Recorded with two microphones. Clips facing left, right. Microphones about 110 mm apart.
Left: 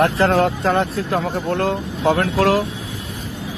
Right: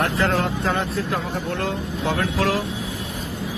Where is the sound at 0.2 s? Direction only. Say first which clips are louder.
Left 5 dB; 45° left (ahead or behind).